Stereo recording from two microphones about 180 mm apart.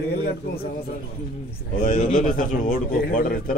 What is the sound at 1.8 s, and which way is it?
Speech, 45° left (ahead or behind).